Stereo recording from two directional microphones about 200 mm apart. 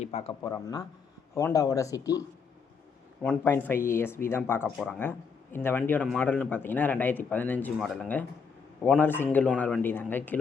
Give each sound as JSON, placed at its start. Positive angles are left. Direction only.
{"t": 0.0, "sound": "speech", "side_deg": 30}
{"t": 0.4, "sound": "speech", "side_deg": 20}